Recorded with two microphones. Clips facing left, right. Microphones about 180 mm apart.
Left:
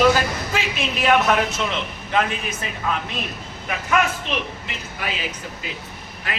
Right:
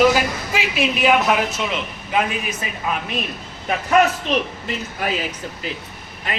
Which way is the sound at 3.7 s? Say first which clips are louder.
Right 5 dB; 40° right (ahead or behind).